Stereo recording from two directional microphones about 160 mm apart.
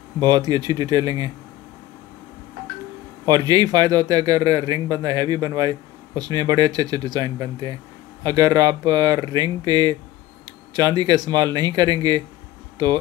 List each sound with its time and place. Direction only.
0.2 s a man's voice: 25° right (ahead or behind)
3.3 s a man's voice: 25° right (ahead or behind)